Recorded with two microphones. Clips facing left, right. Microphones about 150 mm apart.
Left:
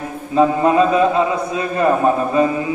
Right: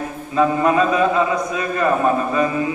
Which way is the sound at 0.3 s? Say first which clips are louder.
Left 3 dB; 25° left (ahead or behind).